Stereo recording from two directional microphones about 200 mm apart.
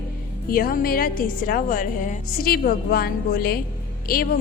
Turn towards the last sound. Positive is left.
turn(degrees=45)  # may be behind; listen again after turning